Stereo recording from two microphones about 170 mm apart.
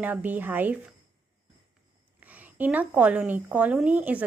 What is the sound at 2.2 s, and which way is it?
A woman's voice, 10° right (ahead or behind).